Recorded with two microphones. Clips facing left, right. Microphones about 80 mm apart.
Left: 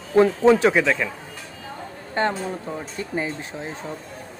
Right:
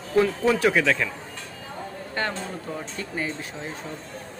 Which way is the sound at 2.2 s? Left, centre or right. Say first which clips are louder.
Left 6 dB; left.